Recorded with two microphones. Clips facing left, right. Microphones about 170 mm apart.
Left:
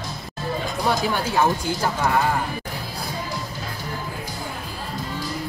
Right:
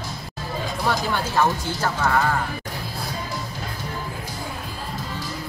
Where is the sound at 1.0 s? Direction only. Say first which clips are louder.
Even; 15° left (ahead or behind).